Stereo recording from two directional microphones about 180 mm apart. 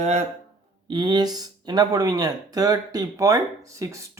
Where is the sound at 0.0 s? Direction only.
40° right (ahead or behind).